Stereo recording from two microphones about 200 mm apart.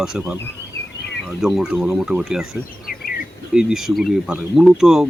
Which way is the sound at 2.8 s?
45° left (ahead or behind).